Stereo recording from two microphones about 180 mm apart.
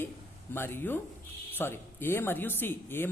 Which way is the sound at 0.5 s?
10° left (ahead or behind).